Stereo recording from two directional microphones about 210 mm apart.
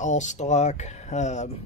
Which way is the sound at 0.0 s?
35° left (ahead or behind).